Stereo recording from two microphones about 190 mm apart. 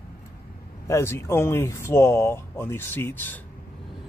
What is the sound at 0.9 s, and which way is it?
Speech, 15° left (ahead or behind).